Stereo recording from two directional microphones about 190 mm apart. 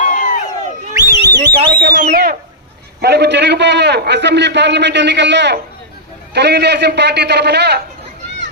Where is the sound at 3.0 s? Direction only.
60° right (ahead or behind).